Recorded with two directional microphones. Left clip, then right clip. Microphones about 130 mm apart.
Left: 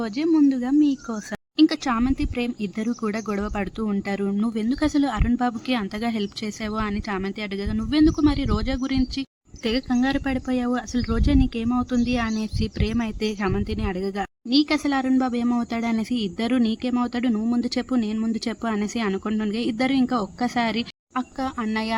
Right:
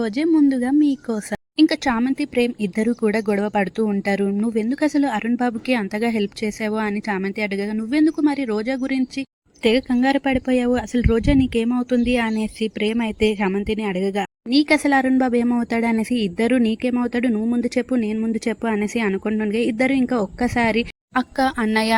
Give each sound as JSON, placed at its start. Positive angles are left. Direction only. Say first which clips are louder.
{"t": 0.4, "sound": "speech", "louder": "right 2 dB", "side_deg": -25}
{"t": 7.8, "sound": "speech", "louder": "even", "side_deg": -15}
{"t": 13.7, "sound": "a woman's voice", "louder": "right 5 dB", "side_deg": -25}
{"t": 21.2, "sound": "a woman's voice", "louder": "right 8 dB", "side_deg": -40}